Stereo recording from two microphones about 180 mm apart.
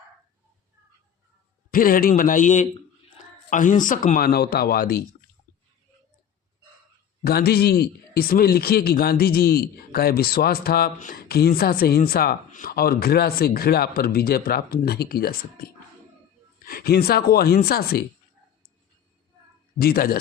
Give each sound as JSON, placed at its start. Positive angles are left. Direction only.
{"t": 1.7, "sound": "speech", "side_deg": 50}
{"t": 4.3, "sound": "a man's voice", "side_deg": 60}
{"t": 7.3, "sound": "a man's voice", "side_deg": 60}
{"t": 16.6, "sound": "a man's voice", "side_deg": 55}
{"t": 19.8, "sound": "a man's voice", "side_deg": 55}